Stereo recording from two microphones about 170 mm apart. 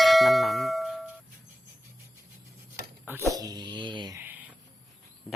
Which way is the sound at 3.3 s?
20° right (ahead or behind).